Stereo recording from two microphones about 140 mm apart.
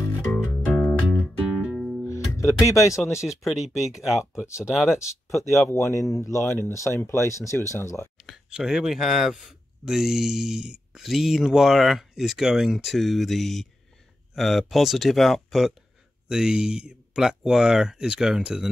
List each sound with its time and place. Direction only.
0.2 s music: 10° left (ahead or behind)
3.2 s speech: centre (ahead or behind)
5.7 s speech: 20° left (ahead or behind)
8.3 s speech: 5° right (ahead or behind)